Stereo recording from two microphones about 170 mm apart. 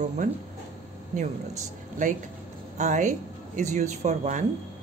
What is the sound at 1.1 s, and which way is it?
A woman's voice, 45° right (ahead or behind).